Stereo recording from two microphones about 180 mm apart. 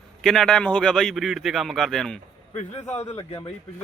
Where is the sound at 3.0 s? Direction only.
20° left (ahead or behind).